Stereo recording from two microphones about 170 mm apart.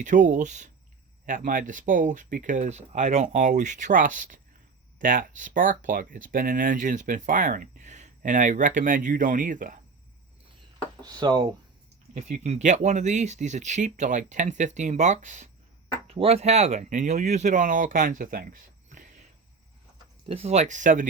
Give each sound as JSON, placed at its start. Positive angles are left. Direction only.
{"t": 0.0, "sound": "speech", "side_deg": -50}
{"t": 11.0, "sound": "speech", "side_deg": -25}
{"t": 12.1, "sound": "speech", "side_deg": -45}
{"t": 16.0, "sound": "speech", "side_deg": -35}
{"t": 20.2, "sound": "speech", "side_deg": -35}